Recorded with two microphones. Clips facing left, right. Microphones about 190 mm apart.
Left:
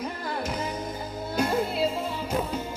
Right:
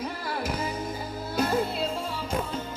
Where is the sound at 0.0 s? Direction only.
5° right (ahead or behind).